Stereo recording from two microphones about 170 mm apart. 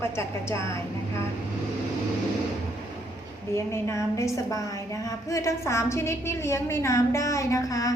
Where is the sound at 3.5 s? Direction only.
15° left (ahead or behind).